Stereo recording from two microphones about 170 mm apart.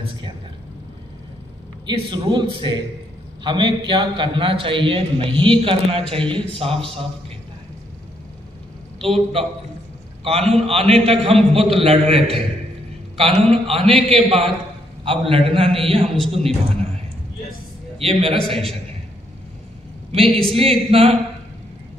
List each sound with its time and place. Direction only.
1.9 s a man's voice: 25° right (ahead or behind)
9.0 s a man's voice: 35° right (ahead or behind)
17.9 s a man's voice: 35° right (ahead or behind)
20.2 s a man's voice: 5° left (ahead or behind)
20.9 s a man's voice: 35° right (ahead or behind)